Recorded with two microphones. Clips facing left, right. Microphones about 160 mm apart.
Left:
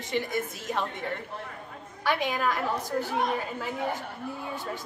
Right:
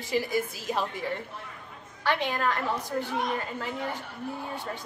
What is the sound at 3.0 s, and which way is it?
Speech, 40° left (ahead or behind).